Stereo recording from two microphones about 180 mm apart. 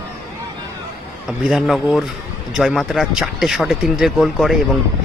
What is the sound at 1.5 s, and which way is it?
Speech, centre (ahead or behind).